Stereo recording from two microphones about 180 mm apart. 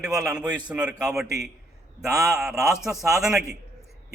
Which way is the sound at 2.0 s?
15° right (ahead or behind).